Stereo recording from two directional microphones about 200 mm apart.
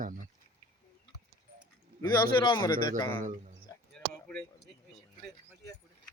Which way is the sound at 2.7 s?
45° right (ahead or behind).